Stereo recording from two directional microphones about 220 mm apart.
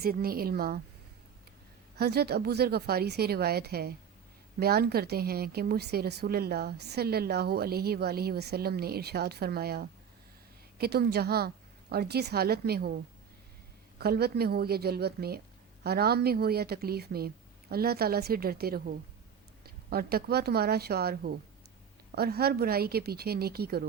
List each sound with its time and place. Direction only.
0.0 s a woman's voice: 45° right (ahead or behind)
2.0 s a woman's voice: 45° right (ahead or behind)
14.0 s a woman's voice: 45° right (ahead or behind)